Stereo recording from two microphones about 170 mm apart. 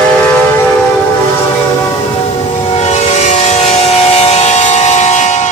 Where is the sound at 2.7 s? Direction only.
40° left (ahead or behind).